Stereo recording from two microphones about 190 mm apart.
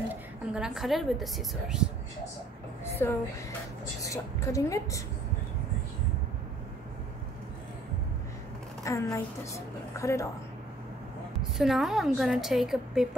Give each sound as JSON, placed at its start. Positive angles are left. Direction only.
{"t": 0.1, "sound": "a woman's voice", "side_deg": -5}
{"t": 2.9, "sound": "a sound", "side_deg": 15}
{"t": 4.0, "sound": "a woman's voice", "side_deg": 15}
{"t": 8.8, "sound": "a woman's voice", "side_deg": 15}
{"t": 11.5, "sound": "a woman's voice", "side_deg": 0}